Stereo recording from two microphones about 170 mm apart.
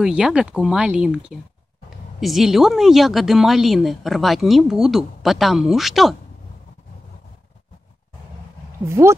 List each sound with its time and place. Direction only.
0.0 s speech: 5° right (ahead or behind)
8.8 s speech: 15° right (ahead or behind)